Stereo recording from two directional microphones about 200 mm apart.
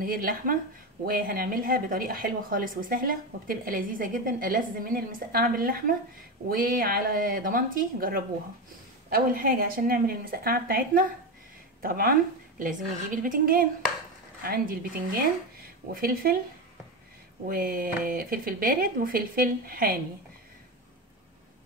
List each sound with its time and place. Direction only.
0.0 s speech: 45° right (ahead or behind)
15.9 s speech: 45° right (ahead or behind)
17.5 s speech: 45° right (ahead or behind)